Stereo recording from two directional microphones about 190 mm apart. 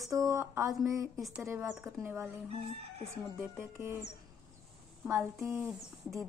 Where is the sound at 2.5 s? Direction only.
30° right (ahead or behind).